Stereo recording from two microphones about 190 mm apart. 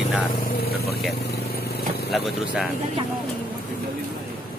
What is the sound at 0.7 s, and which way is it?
Speech, 55° left (ahead or behind).